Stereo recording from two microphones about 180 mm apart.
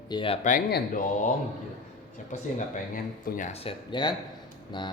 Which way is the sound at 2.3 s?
50° left (ahead or behind).